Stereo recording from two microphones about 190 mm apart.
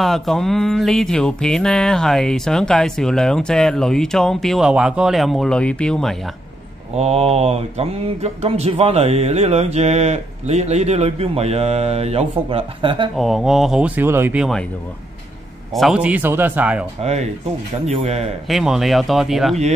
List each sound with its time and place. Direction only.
0.0 s music: centre (ahead or behind)
7.0 s speech: 35° right (ahead or behind)
13.1 s music: centre (ahead or behind)
15.7 s speech: centre (ahead or behind)
17.0 s speech: 35° right (ahead or behind)
18.5 s music: centre (ahead or behind)